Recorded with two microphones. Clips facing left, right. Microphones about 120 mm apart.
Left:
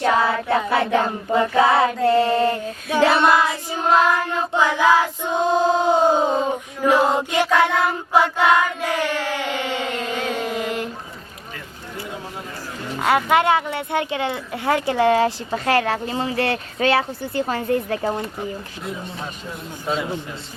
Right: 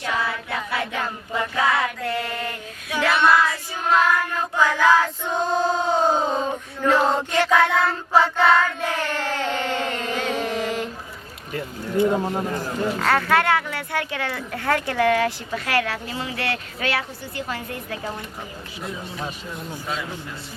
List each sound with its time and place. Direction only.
0.0 s child singing: 50° left (ahead or behind); by 10.8 s centre (ahead or behind)
12.1 s a sound: 50° right (ahead or behind)
13.0 s speech: 15° left (ahead or behind); by 18.3 s 35° left (ahead or behind)
19.9 s speech: 30° left (ahead or behind)